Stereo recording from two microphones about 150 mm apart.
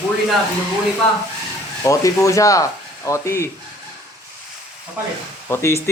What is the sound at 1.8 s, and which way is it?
Speech, 20° left (ahead or behind).